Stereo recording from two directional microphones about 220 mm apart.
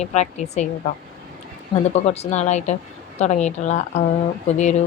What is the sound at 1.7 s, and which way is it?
Speech, 20° left (ahead or behind).